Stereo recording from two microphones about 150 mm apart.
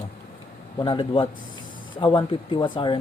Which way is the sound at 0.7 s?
35° left (ahead or behind).